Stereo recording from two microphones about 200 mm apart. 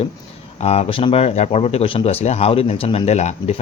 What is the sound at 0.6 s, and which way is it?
Speech, 30° left (ahead or behind).